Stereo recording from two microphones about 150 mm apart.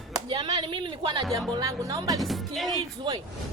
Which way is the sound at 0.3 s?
30° right (ahead or behind).